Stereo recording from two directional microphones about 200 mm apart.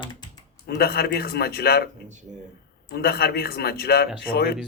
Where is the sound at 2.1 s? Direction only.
35° right (ahead or behind).